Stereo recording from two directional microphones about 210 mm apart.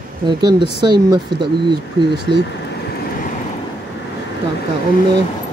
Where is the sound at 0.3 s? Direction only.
20° right (ahead or behind).